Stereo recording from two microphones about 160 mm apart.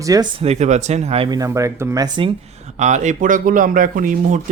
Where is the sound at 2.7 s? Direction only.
50° right (ahead or behind).